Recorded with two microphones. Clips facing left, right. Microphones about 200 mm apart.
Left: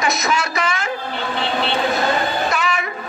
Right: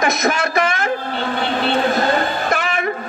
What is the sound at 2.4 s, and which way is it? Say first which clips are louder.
Music: right 1 dB; 55° right (ahead or behind).